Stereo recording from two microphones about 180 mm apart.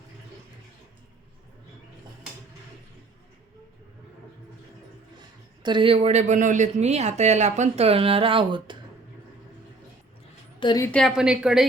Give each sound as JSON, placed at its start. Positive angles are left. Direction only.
{"t": 5.6, "sound": "speech", "side_deg": -30}
{"t": 10.6, "sound": "a woman's voice", "side_deg": 25}
{"t": 10.9, "sound": "a woman's voice", "side_deg": 0}